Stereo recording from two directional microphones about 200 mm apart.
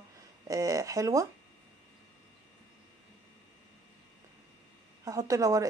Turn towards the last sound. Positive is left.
turn(degrees=-15)  # may be behind; listen again after turning